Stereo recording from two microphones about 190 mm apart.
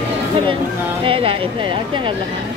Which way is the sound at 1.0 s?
30° right (ahead or behind).